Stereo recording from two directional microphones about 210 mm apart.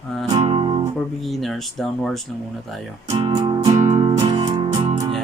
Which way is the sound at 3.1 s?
20° right (ahead or behind).